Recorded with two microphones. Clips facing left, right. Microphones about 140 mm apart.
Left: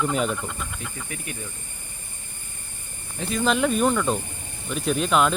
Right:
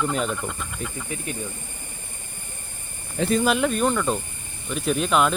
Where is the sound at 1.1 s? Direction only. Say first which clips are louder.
Right 4 dB; 25° right (ahead or behind).